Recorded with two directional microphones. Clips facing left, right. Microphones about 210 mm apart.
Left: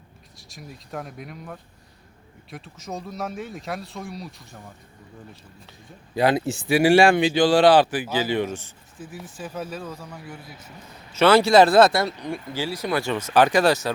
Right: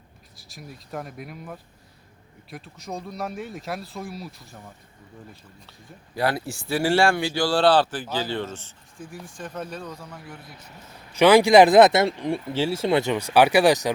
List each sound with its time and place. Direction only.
0.3 s speech: centre (ahead or behind)
6.1 s speech: 20° left (ahead or behind); by 10.6 s centre (ahead or behind)
11.1 s speech: 15° right (ahead or behind)